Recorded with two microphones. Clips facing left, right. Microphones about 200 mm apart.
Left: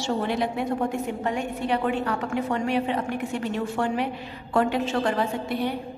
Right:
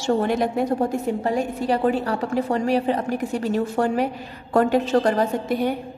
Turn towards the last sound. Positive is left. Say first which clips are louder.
# right 5 dB
turn(degrees=-45)  # may be behind; listen again after turning